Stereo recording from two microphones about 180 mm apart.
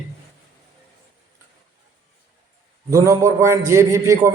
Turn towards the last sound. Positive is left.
turn(degrees=-15)  # may be behind; listen again after turning